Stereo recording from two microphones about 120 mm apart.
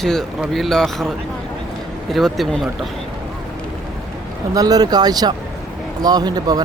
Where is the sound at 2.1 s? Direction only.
Centre (ahead or behind).